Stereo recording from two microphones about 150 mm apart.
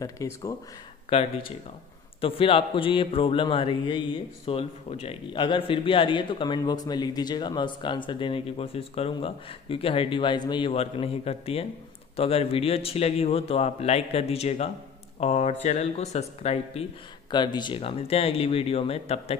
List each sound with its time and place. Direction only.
0.0 s speech: 25° left (ahead or behind)
1.1 s a man's voice: 40° left (ahead or behind)
10.7 s a man's voice: 40° left (ahead or behind)
17.3 s a man's voice: 30° left (ahead or behind)